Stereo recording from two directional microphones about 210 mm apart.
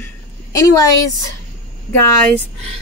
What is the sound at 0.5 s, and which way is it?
Speech, 15° left (ahead or behind).